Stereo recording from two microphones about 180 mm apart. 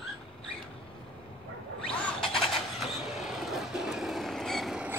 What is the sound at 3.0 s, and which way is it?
Train, centre (ahead or behind).